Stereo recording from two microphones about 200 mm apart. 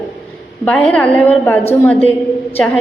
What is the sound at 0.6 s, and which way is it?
A woman's voice, 5° left (ahead or behind).